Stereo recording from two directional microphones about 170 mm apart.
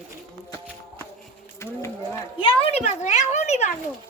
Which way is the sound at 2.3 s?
35° left (ahead or behind).